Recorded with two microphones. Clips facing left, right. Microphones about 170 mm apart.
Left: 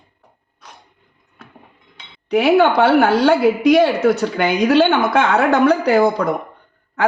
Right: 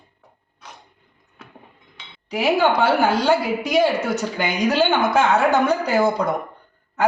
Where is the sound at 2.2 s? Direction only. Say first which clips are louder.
Left 5 dB; 65° left (ahead or behind).